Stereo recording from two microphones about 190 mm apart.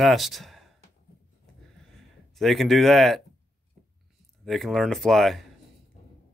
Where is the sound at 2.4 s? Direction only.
Centre (ahead or behind).